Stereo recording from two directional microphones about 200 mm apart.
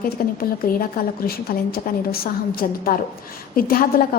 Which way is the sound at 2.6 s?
45° left (ahead or behind).